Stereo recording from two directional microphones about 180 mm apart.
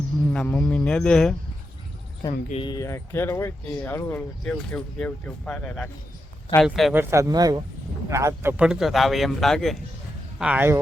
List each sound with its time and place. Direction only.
0.3 s speech: 10° left (ahead or behind)
2.5 s speech: 25° left (ahead or behind); by 6.9 s centre (ahead or behind)
6.9 s a man's voice: 15° right (ahead or behind)